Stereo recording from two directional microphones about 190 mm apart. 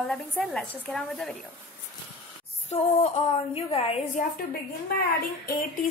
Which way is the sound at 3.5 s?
30° left (ahead or behind).